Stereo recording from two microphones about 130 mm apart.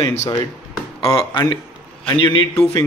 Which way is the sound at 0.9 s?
40° left (ahead or behind).